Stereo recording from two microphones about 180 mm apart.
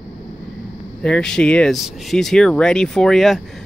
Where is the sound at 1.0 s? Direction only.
5° left (ahead or behind).